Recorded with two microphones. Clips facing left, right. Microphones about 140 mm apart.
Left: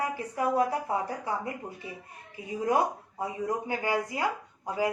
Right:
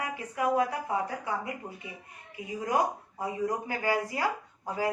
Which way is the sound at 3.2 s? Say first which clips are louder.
Even; 20° left (ahead or behind).